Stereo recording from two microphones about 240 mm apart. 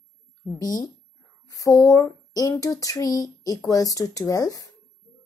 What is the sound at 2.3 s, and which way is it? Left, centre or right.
Speech, centre.